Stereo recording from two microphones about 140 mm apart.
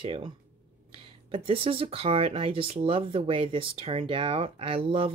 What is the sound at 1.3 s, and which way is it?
Speech, 40° right (ahead or behind).